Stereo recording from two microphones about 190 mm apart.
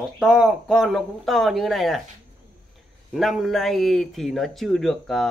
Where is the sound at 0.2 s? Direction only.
5° right (ahead or behind).